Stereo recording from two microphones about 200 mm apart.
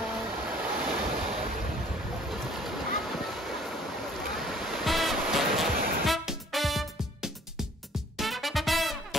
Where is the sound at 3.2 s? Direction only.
Centre (ahead or behind).